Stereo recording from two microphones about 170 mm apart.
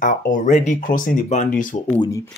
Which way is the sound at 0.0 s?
50° left (ahead or behind).